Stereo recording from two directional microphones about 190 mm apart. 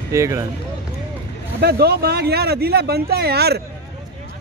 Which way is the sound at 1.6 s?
55° right (ahead or behind).